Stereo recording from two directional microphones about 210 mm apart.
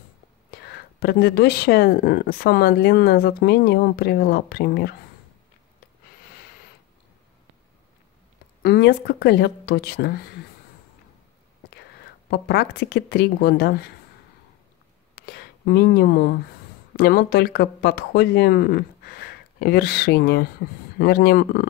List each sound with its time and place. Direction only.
0.5 s speech: 50° left (ahead or behind)
8.6 s speech: 50° left (ahead or behind)
12.3 s speech: 50° left (ahead or behind)
15.1 s speech: 45° left (ahead or behind)